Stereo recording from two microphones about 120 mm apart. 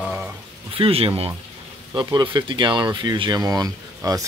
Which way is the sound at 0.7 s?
50° right (ahead or behind).